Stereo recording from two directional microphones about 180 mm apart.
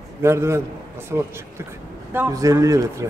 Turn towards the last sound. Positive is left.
turn(degrees=-15)  # may be behind; listen again after turning